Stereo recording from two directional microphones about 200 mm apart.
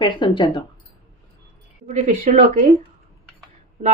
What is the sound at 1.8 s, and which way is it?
Speech, 35° right (ahead or behind).